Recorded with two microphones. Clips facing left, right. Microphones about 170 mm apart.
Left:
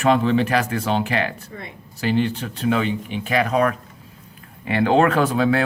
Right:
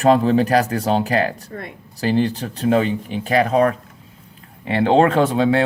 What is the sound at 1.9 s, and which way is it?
Speech, 35° right (ahead or behind).